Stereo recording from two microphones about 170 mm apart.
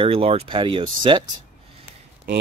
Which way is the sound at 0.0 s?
35° right (ahead or behind).